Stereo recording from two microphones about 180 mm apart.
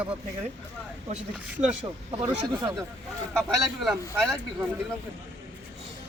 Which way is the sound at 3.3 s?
5° left (ahead or behind).